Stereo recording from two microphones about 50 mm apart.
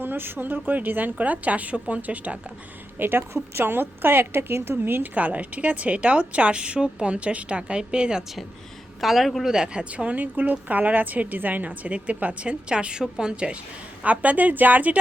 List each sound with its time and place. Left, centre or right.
0.0 s speech: right
3.0 s a woman's voice: right
5.1 s a woman's voice: right
9.0 s a woman's voice: centre
9.5 s speech: centre
10.0 s a woman's voice: right